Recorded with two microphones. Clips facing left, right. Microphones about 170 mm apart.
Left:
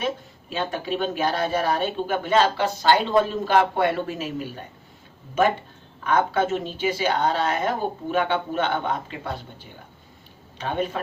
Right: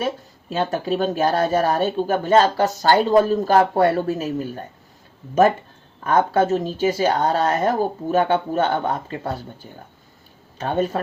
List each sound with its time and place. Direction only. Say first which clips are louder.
0.5 s speech: right 5 dB; 40° right (ahead or behind)
6.0 s speech: right 4 dB; 40° right (ahead or behind)
10.6 s speech: right 5 dB; 40° right (ahead or behind)